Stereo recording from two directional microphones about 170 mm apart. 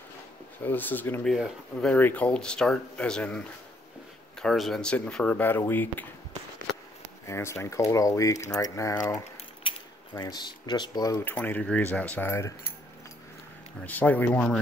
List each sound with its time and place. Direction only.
0.7 s speech: 10° left (ahead or behind)
7.2 s speech: 15° left (ahead or behind)
13.8 s speech: 10° left (ahead or behind)